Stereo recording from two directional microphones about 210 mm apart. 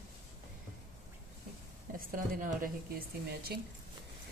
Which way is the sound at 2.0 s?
40° right (ahead or behind).